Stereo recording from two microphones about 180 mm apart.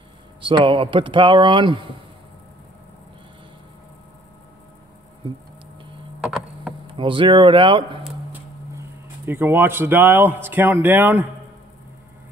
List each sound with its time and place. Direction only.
0.4 s speech: 30° right (ahead or behind)
6.2 s tick-tock: 5° right (ahead or behind)
6.9 s speech: 30° right (ahead or behind)
8.7 s speech: 15° right (ahead or behind)